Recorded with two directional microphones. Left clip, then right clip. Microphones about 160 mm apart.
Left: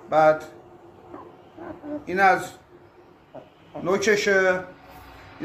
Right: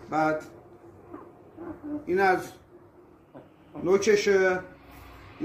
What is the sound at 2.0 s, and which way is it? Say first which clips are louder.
Speech: left 4 dB; 25° left (ahead or behind).